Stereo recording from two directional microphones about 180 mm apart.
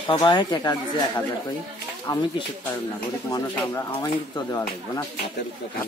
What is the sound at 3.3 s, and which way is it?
Speech, 20° left (ahead or behind).